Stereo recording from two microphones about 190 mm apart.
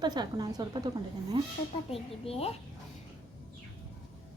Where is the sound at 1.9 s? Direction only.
30° left (ahead or behind).